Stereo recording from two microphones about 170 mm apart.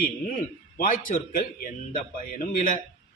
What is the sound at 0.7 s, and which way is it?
A man's voice, 50° left (ahead or behind).